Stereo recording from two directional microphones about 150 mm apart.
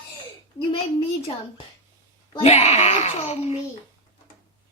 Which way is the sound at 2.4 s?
50° left (ahead or behind).